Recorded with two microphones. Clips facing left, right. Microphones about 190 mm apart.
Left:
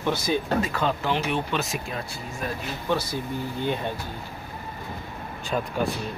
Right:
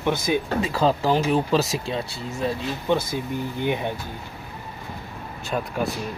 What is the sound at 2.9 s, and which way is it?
Speech, 20° right (ahead or behind).